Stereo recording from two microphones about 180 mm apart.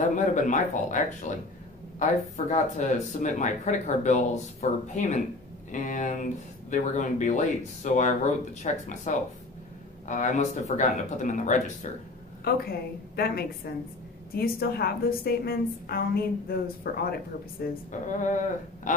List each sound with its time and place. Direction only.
0.0 s speech: 45° left (ahead or behind)
12.4 s a woman's voice: 55° left (ahead or behind)
18.0 s speech: 45° left (ahead or behind)